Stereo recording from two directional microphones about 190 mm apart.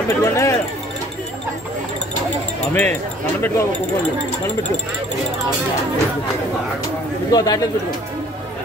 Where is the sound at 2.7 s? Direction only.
10° left (ahead or behind).